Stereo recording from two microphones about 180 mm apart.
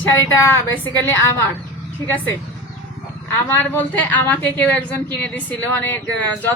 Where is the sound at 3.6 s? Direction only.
10° left (ahead or behind).